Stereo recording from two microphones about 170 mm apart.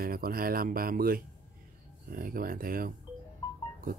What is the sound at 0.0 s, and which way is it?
Speech, 60° right (ahead or behind).